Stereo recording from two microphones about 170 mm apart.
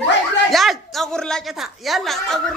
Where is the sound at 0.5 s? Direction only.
Centre (ahead or behind).